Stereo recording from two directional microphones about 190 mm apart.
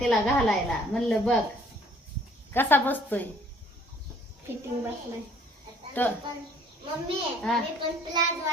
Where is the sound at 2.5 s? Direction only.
10° left (ahead or behind).